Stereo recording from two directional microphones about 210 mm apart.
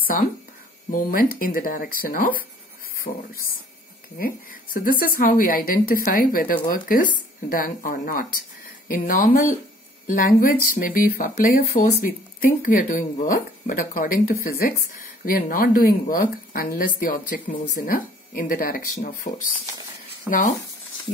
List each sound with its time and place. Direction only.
0.0 s speech: 45° left (ahead or behind)